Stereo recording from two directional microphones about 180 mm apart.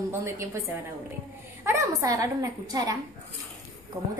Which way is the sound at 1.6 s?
15° right (ahead or behind).